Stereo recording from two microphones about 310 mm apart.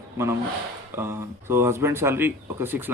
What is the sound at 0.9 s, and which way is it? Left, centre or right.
A man's voice, centre.